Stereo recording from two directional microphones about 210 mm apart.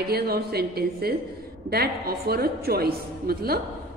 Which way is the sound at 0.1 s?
50° right (ahead or behind).